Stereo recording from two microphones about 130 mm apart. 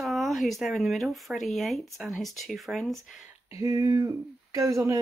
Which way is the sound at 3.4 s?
25° right (ahead or behind).